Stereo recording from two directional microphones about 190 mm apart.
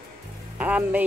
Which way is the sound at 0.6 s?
5° right (ahead or behind).